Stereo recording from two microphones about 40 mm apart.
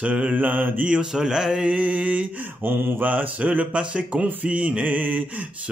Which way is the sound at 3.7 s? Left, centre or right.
Right.